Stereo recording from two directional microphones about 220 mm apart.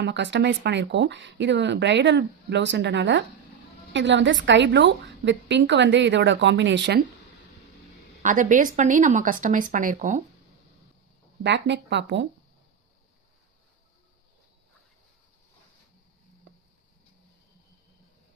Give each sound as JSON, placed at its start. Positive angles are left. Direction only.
{"t": 0.0, "sound": "speech", "side_deg": -55}
{"t": 8.2, "sound": "speech", "side_deg": -35}
{"t": 11.4, "sound": "speech", "side_deg": -50}
{"t": 16.5, "sound": "a sound", "side_deg": -55}